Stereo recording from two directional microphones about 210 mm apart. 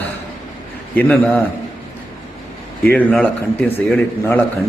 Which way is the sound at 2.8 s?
10° left (ahead or behind).